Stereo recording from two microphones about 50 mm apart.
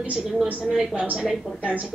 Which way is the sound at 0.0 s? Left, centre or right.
Right.